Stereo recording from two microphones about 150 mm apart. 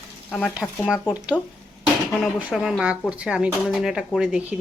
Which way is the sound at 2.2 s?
5° right (ahead or behind).